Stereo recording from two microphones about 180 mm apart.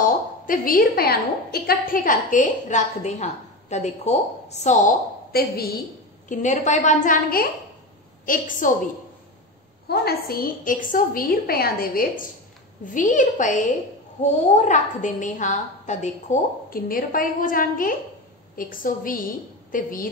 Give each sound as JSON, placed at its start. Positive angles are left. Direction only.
{"t": 0.0, "sound": "a woman's voice", "side_deg": 50}
{"t": 6.2, "sound": "a woman's voice", "side_deg": 45}
{"t": 9.8, "sound": "a woman's voice", "side_deg": 60}